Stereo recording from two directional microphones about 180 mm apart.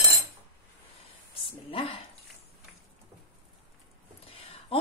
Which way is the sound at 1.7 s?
30° left (ahead or behind).